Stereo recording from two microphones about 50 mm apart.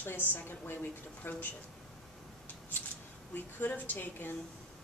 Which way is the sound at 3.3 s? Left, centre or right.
Left.